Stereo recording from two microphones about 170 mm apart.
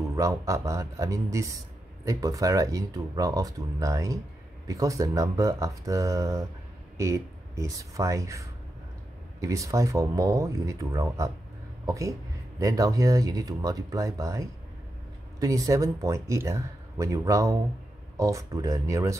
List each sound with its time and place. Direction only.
0.0 s speech: 20° right (ahead or behind)